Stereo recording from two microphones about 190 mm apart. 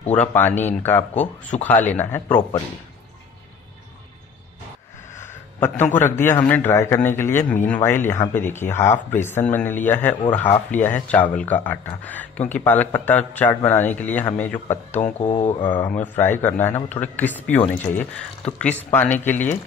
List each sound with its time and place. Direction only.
0.1 s a man's voice: 10° left (ahead or behind)
5.1 s a man's voice: 10° left (ahead or behind)
14.9 s speech: 40° left (ahead or behind)
15.7 s a man's voice: 10° left (ahead or behind)